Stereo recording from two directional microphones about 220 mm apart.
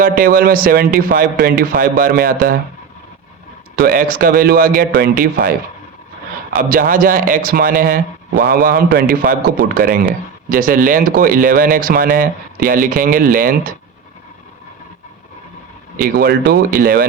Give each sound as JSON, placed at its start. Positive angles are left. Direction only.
{"t": 0.0, "sound": "a man's voice", "side_deg": -40}
{"t": 3.8, "sound": "a man's voice", "side_deg": -40}
{"t": 6.6, "sound": "a man's voice", "side_deg": -40}
{"t": 16.0, "sound": "speech", "side_deg": -45}